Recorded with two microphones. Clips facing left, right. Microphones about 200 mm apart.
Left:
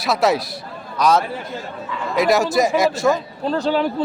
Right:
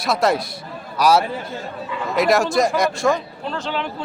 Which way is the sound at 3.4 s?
40° left (ahead or behind).